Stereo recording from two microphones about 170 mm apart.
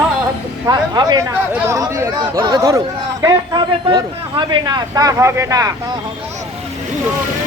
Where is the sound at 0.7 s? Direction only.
25° right (ahead or behind).